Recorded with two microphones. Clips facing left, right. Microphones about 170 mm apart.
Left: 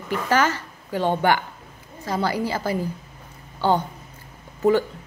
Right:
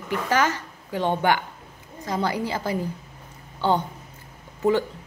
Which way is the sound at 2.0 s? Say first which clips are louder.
Left 2 dB; 15° right (ahead or behind).